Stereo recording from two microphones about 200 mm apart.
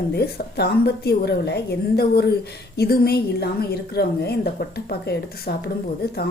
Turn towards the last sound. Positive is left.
turn(degrees=50)  # may be behind; listen again after turning